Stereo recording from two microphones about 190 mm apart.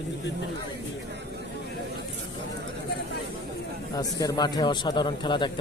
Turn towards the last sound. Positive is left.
turn(degrees=25)  # may be behind; listen again after turning